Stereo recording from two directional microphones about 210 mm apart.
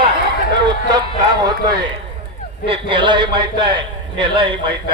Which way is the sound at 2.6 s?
25° right (ahead or behind).